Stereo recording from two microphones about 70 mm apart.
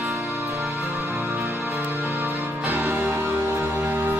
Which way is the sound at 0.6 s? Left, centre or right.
Right.